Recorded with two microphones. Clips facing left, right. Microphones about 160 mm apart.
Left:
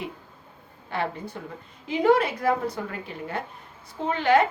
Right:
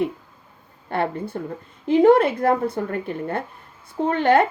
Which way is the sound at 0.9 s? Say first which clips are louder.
Right 5 dB; 55° right (ahead or behind).